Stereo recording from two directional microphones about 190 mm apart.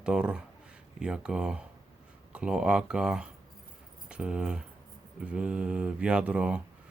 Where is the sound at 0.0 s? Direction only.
5° right (ahead or behind).